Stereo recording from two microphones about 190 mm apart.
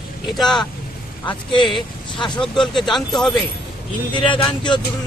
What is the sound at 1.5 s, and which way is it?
Speech, 25° left (ahead or behind).